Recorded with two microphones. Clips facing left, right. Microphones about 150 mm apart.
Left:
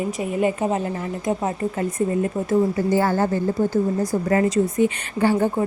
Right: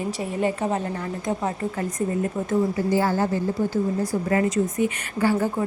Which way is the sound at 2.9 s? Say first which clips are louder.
Left 2 dB; 55° left (ahead or behind).